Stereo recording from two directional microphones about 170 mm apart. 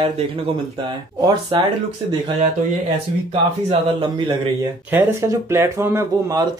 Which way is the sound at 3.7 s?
25° right (ahead or behind).